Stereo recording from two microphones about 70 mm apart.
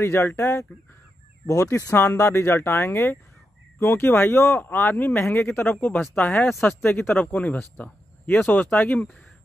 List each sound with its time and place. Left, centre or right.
0.0 s speech: left